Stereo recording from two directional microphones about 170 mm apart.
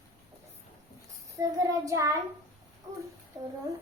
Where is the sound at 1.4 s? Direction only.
20° right (ahead or behind).